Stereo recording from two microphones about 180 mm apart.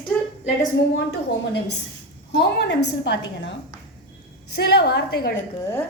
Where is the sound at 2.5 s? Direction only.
70° left (ahead or behind).